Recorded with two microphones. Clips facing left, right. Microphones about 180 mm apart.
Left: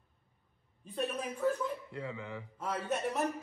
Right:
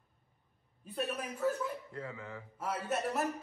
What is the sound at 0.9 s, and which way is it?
Speech, 5° right (ahead or behind).